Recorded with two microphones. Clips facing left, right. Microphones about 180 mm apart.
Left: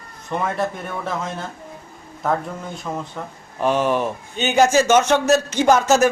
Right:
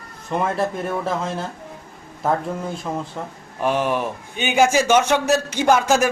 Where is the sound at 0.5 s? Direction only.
30° right (ahead or behind).